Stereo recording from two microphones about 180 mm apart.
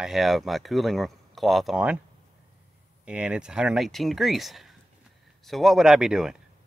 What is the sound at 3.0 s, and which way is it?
Speech, 5° right (ahead or behind).